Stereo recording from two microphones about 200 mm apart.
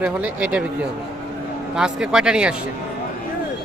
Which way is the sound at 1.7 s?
5° right (ahead or behind).